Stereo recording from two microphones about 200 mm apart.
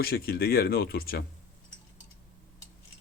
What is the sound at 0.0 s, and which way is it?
Speech, 50° left (ahead or behind).